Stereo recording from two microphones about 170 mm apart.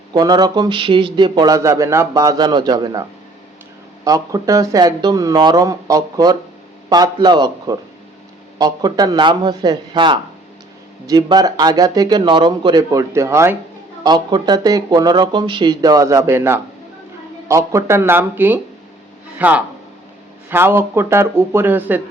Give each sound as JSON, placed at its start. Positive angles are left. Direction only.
{"t": 0.1, "sound": "speech", "side_deg": -25}